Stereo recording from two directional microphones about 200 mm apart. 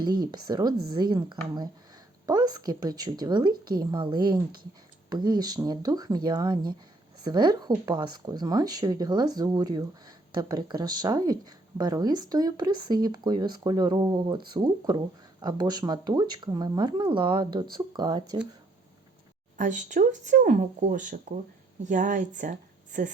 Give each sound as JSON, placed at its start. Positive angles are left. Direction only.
{"t": 0.0, "sound": "speech", "side_deg": -20}
{"t": 19.5, "sound": "speech", "side_deg": -40}